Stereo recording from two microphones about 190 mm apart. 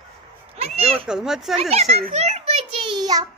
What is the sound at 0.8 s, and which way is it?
Speech, 5° right (ahead or behind).